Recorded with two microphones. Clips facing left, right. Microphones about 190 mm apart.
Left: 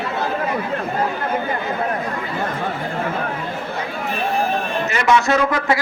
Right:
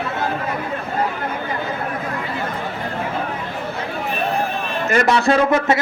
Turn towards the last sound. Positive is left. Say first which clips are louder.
# right 2 dB
turn(degrees=-30)  # may be behind; listen again after turning